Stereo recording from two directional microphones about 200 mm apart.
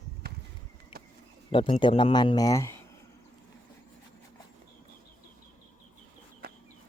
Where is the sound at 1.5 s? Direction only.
25° left (ahead or behind).